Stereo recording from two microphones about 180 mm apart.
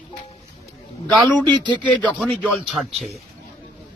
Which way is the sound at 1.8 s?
5° left (ahead or behind).